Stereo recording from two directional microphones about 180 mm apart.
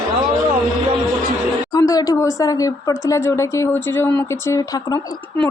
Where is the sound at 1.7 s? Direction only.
20° left (ahead or behind).